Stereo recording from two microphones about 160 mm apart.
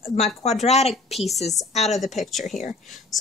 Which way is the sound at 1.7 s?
45° left (ahead or behind).